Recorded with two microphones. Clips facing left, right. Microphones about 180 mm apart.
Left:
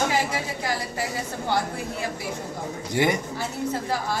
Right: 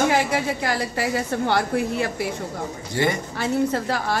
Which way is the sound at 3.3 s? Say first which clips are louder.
Right 6 dB; 75° right (ahead or behind).